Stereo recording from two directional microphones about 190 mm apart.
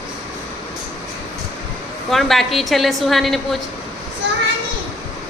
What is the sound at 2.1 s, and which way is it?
A woman's voice, centre (ahead or behind).